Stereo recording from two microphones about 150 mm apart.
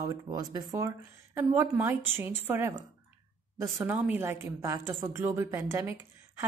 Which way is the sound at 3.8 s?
10° right (ahead or behind).